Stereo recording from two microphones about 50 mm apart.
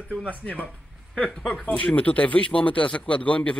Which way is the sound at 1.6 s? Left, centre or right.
Left.